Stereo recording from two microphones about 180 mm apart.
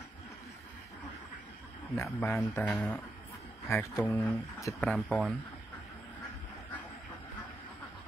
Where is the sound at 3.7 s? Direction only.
15° left (ahead or behind).